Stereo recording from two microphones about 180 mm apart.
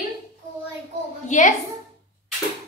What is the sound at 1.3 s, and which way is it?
Speech, 45° left (ahead or behind).